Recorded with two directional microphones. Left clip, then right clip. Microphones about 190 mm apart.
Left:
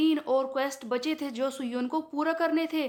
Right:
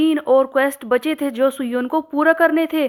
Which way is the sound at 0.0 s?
30° right (ahead or behind).